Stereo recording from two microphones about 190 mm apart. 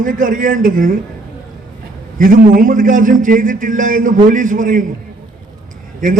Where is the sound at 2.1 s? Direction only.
45° right (ahead or behind).